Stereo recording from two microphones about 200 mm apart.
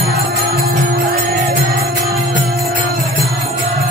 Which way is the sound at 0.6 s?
50° right (ahead or behind).